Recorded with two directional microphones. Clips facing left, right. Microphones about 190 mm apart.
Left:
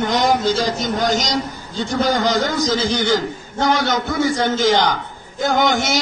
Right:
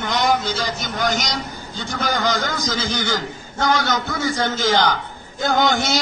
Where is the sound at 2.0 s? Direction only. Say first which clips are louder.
Left 4 dB; 25° left (ahead or behind).